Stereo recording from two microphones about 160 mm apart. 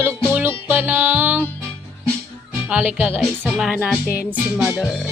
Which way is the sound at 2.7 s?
10° right (ahead or behind).